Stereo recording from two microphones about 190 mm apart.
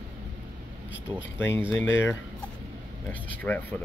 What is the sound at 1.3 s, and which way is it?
Speech, 10° left (ahead or behind).